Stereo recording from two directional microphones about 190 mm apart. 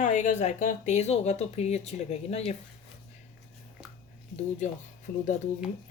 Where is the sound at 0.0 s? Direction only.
40° left (ahead or behind).